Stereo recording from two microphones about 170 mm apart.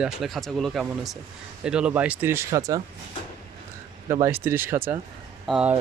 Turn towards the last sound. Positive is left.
turn(degrees=0)  # may be behind; listen again after turning